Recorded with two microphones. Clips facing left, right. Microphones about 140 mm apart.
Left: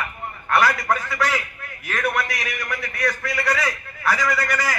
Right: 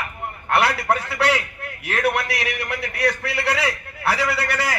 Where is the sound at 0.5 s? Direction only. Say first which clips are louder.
Even; 65° right (ahead or behind).